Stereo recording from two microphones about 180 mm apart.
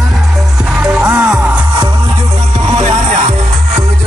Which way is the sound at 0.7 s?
5° right (ahead or behind).